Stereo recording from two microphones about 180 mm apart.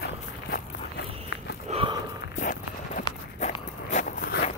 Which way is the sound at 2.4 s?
45° left (ahead or behind).